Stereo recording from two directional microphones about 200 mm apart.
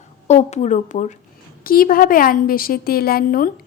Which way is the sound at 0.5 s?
35° left (ahead or behind).